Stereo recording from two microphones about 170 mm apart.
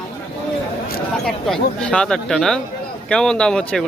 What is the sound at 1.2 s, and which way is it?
Speech, 5° left (ahead or behind).